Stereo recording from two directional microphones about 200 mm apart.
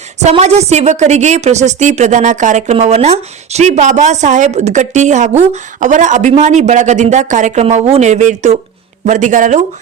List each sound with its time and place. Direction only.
0.2 s a woman's voice: 35° right (ahead or behind)